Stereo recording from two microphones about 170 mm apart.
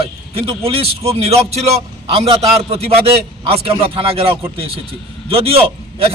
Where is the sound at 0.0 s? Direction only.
35° right (ahead or behind).